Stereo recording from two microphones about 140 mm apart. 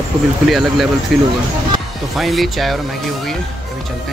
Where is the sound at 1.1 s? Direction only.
Centre (ahead or behind).